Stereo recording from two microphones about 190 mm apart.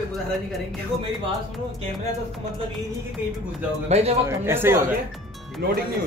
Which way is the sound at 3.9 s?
35° right (ahead or behind).